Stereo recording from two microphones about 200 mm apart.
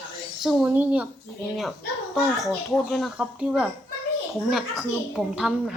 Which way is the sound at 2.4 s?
Centre (ahead or behind).